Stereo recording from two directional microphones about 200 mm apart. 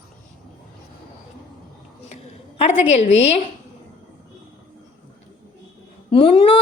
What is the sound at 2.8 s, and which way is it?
Speech, 65° left (ahead or behind).